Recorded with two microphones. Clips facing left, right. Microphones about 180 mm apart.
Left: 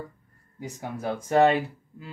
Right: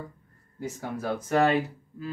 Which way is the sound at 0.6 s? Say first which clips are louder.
Right 1 dB; 15° left (ahead or behind).